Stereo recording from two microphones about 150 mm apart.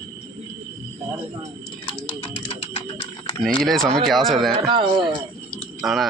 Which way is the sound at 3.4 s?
5° left (ahead or behind).